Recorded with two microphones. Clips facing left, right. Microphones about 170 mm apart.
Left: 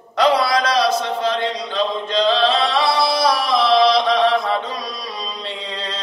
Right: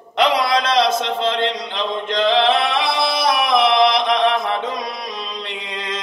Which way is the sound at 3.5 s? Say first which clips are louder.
Even; 20° right (ahead or behind).